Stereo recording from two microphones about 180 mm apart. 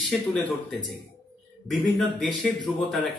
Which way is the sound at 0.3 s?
5° left (ahead or behind).